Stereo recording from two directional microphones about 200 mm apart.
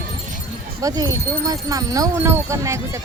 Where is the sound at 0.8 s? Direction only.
20° right (ahead or behind).